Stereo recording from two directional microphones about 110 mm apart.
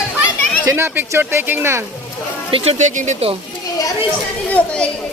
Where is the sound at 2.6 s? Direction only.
80° right.